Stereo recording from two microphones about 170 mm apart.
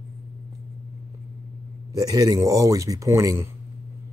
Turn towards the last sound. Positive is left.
turn(degrees=-15)  # may be behind; listen again after turning